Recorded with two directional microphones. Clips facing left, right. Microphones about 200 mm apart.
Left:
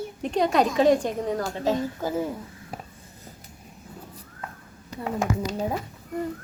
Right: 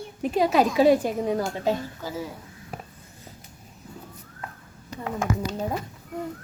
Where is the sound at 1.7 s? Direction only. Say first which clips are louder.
Left 2 dB; 50° left (ahead or behind).